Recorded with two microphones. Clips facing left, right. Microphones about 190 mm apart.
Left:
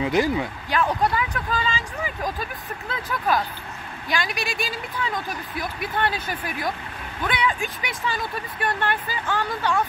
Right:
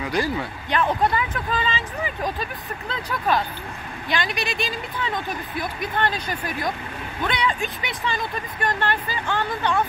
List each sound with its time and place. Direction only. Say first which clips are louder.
0.0 s speech: left 3 dB; 20° left (ahead or behind)
1.1 s speech: right 1 dB; centre (ahead or behind)